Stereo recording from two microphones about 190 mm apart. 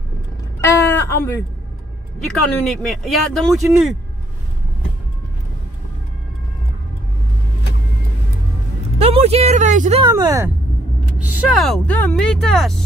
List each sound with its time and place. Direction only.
0.6 s a sound: 10° left (ahead or behind)
2.1 s speech: centre (ahead or behind)
8.9 s speech: 35° right (ahead or behind)
10.0 s speech: 20° right (ahead or behind)
11.1 s speech: 5° right (ahead or behind)